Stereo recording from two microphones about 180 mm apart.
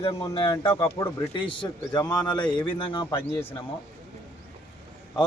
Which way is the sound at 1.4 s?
25° left (ahead or behind).